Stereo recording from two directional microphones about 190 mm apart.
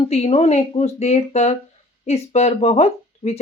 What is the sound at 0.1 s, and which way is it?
Speech, 35° left (ahead or behind).